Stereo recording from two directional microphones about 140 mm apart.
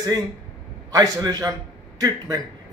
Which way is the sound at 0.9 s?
25° right (ahead or behind).